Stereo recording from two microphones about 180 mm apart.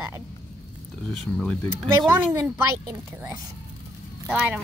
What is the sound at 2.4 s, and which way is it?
A child's voice, 15° right (ahead or behind).